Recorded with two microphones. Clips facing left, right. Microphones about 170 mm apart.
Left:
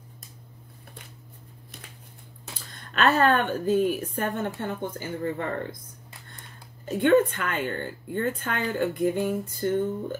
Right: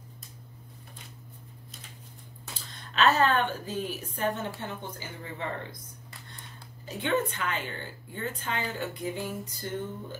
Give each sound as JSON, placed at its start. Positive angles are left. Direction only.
{"t": 2.9, "sound": "a woman's voice", "side_deg": 50}
{"t": 6.9, "sound": "a woman's voice", "side_deg": 50}